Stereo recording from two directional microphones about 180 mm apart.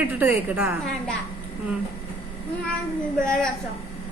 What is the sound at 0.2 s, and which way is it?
Speech, 10° right (ahead or behind).